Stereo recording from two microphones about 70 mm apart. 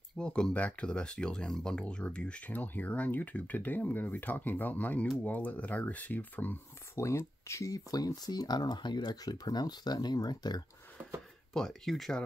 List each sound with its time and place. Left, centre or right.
0.2 s speech: centre
7.0 s speech: left
11.5 s speech: centre